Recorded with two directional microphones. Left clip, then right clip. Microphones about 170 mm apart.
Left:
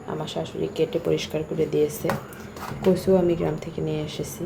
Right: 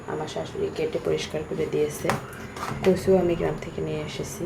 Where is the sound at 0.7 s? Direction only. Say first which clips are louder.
Left 4 dB; 20° left (ahead or behind).